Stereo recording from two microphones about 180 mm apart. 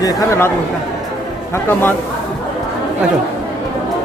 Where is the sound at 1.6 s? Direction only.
10° left (ahead or behind).